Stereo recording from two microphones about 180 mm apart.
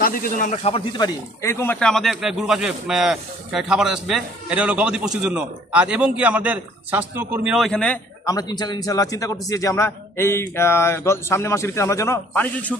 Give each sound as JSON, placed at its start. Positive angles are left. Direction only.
{"t": 0.0, "sound": "speech", "side_deg": 50}
{"t": 0.9, "sound": "speech", "side_deg": 20}
{"t": 8.3, "sound": "a man's voice", "side_deg": 20}